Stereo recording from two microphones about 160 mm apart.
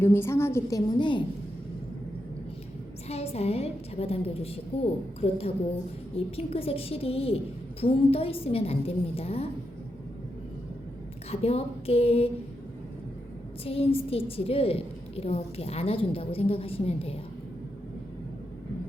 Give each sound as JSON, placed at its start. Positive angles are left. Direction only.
{"t": 0.0, "sound": "a woman's voice", "side_deg": 15}
{"t": 0.9, "sound": "a woman's voice", "side_deg": 30}
{"t": 3.1, "sound": "a woman's voice", "side_deg": 40}
{"t": 11.3, "sound": "a woman's voice", "side_deg": 40}
{"t": 13.7, "sound": "a woman's voice", "side_deg": 35}